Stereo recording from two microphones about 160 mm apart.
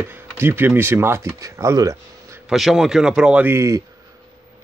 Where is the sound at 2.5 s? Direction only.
Centre (ahead or behind).